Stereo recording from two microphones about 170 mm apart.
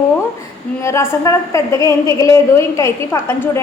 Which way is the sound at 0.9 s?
15° left (ahead or behind).